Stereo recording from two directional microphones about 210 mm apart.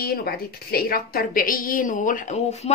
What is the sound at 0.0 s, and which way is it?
A woman's voice, 45° left (ahead or behind).